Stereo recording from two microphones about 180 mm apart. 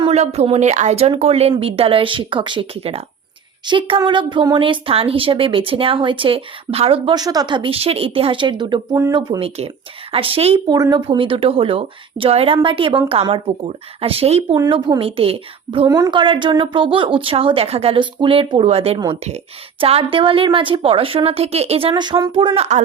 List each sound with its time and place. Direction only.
0.0 s speech: 35° right (ahead or behind); by 9.4 s 20° right (ahead or behind)
9.4 s speech: 30° right (ahead or behind)
10.8 s speech: 20° right (ahead or behind)
15.9 s speech: 20° right (ahead or behind)